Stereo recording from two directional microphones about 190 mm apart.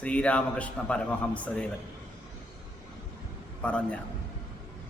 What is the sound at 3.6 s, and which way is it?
Speech, 5° left (ahead or behind).